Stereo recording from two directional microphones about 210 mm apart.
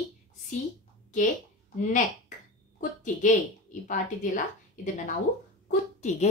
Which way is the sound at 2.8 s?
35° left (ahead or behind).